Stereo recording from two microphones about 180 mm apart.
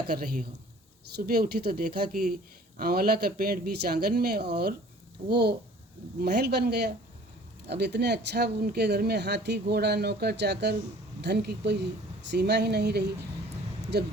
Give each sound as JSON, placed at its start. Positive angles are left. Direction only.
{"t": 0.1, "sound": "speech", "side_deg": -55}